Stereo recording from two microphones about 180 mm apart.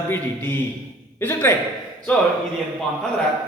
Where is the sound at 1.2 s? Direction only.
15° left (ahead or behind).